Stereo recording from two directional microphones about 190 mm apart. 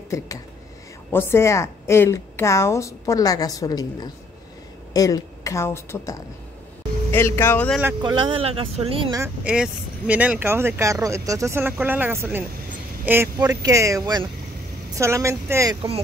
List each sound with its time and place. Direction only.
0.1 s a woman's voice: 15° left (ahead or behind)
8.0 s speech: 25° right (ahead or behind)
9.1 s speech: 10° right (ahead or behind)